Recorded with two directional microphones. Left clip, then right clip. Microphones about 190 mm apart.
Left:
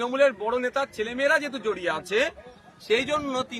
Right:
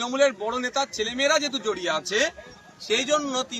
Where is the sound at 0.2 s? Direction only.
Centre (ahead or behind).